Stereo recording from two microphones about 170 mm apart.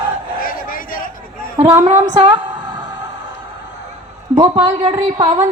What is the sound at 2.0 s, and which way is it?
Female singing, 25° right (ahead or behind).